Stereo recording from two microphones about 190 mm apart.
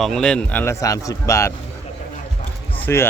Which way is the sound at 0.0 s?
5° left (ahead or behind).